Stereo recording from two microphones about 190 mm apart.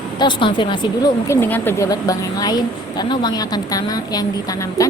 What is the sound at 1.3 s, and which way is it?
A woman's voice, 10° left (ahead or behind).